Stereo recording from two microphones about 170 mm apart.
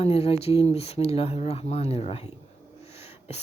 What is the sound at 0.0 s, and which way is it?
A woman's voice, 35° left (ahead or behind).